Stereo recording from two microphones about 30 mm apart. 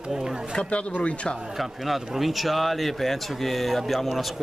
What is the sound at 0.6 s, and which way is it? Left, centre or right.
Speech, left.